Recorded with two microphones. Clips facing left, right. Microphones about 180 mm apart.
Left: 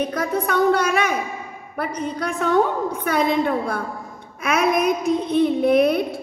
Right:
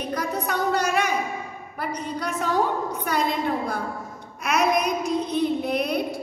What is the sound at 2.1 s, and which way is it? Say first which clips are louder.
A woman's voice: left 5 dB; 55° left (ahead or behind).